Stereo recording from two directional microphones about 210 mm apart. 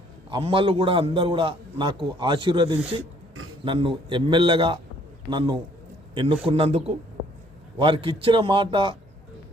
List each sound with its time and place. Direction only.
0.3 s a man's voice: 25° right (ahead or behind)